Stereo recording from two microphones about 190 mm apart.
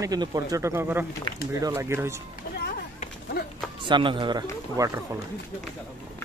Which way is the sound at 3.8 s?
25° right (ahead or behind).